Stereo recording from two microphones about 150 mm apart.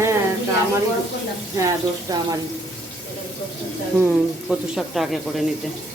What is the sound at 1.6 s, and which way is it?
Speech, 20° right (ahead or behind).